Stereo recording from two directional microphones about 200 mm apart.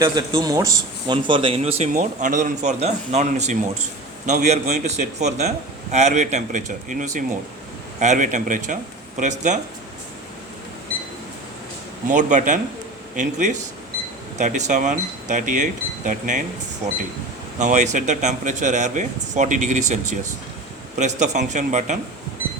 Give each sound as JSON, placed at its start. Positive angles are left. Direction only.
{"t": 0.0, "sound": "speech", "side_deg": -15}
{"t": 12.0, "sound": "speech", "side_deg": -40}
{"t": 17.6, "sound": "speech", "side_deg": -35}
{"t": 21.0, "sound": "speech", "side_deg": -35}